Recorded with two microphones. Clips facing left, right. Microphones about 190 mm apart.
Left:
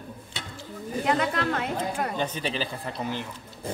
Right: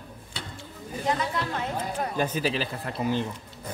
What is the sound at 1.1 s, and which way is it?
A woman's voice, 70° left (ahead or behind).